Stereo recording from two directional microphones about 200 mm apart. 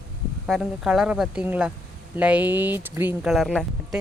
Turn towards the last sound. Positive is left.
turn(degrees=0)  # may be behind; listen again after turning